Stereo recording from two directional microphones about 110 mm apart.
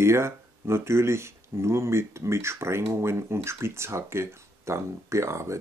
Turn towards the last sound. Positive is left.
turn(degrees=-25)  # may be behind; listen again after turning